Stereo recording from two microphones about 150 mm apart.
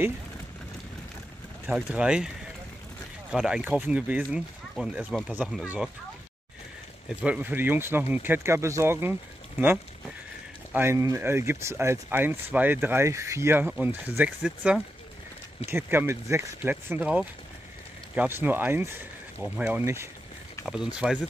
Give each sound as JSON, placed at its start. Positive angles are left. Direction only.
{"t": 1.7, "sound": "speech", "side_deg": -5}
{"t": 7.1, "sound": "speech", "side_deg": -10}
{"t": 10.7, "sound": "speech", "side_deg": -15}
{"t": 20.6, "sound": "speech", "side_deg": -5}